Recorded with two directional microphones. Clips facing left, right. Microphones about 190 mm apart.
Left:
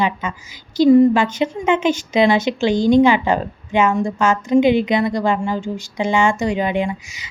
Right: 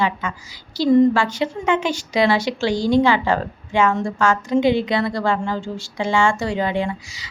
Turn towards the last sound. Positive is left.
turn(degrees=20)  # may be behind; listen again after turning